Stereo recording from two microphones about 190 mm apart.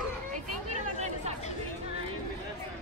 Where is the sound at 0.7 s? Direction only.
35° right (ahead or behind).